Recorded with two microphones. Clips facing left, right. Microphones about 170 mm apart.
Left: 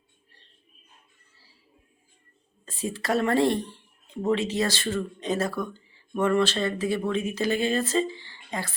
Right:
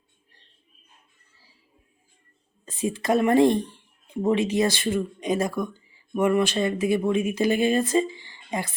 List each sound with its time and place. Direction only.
2.6 s a woman's voice: 15° right (ahead or behind)